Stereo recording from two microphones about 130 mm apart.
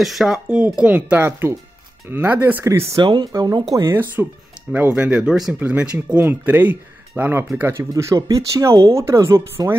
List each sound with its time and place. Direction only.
0.0 s speech: centre (ahead or behind); by 2.8 s 15° right (ahead or behind)
3.0 s speech: 35° right (ahead or behind)